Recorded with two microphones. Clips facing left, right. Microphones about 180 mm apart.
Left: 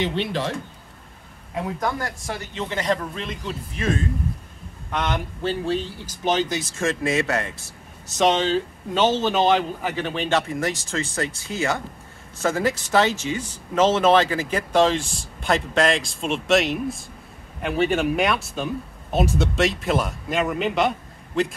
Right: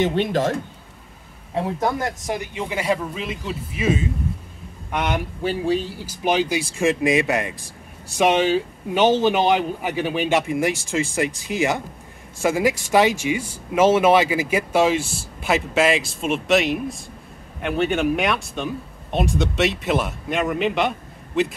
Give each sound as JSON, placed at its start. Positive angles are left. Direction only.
{"t": 0.0, "sound": "speech", "side_deg": -45}
{"t": 1.5, "sound": "speech", "side_deg": -30}